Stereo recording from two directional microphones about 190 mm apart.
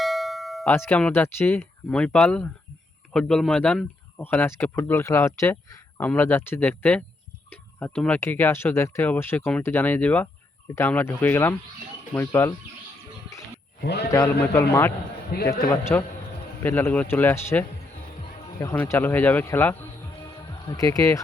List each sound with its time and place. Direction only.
0.0 s a sound: centre (ahead or behind)
3.1 s speech: 5° left (ahead or behind)
14.7 s speech: 10° left (ahead or behind)
15.3 s a man's voice: 50° left (ahead or behind)
15.7 s speech: 10° left (ahead or behind)